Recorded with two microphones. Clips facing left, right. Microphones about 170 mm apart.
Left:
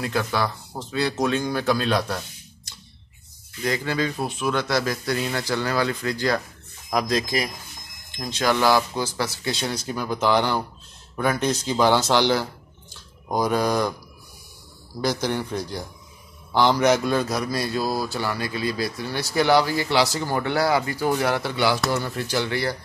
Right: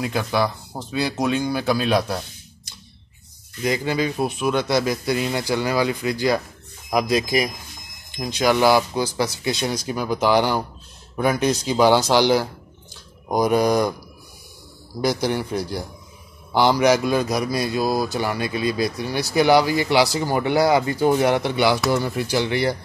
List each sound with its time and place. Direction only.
0.0 s a man's voice: 15° right (ahead or behind)
3.6 s a man's voice: 15° right (ahead or behind)
15.0 s a man's voice: 10° right (ahead or behind)